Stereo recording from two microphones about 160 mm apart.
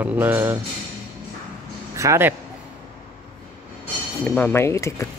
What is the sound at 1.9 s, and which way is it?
Speech, 20° right (ahead or behind).